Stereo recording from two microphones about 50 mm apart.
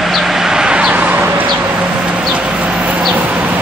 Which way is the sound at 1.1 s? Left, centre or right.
Right.